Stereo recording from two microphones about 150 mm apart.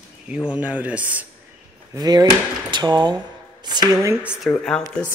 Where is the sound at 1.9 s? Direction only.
25° right (ahead or behind).